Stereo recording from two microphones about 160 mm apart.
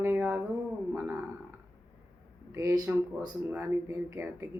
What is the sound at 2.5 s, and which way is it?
A woman's voice, 20° right (ahead or behind).